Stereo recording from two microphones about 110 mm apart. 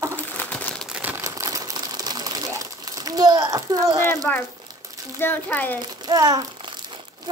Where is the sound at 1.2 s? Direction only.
30° right (ahead or behind).